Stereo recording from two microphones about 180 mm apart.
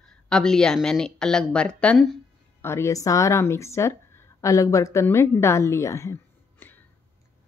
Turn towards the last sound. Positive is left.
turn(degrees=10)  # may be behind; listen again after turning